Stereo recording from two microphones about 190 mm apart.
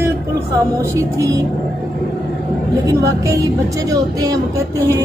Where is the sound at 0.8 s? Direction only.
15° right (ahead or behind).